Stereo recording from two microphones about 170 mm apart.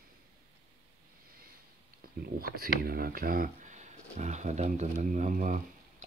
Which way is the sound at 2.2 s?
60° right (ahead or behind).